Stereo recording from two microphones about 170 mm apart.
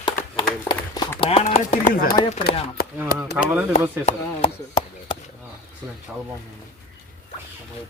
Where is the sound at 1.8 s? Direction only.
60° left (ahead or behind).